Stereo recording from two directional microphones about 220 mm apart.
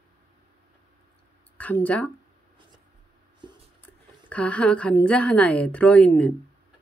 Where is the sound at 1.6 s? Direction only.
5° left (ahead or behind).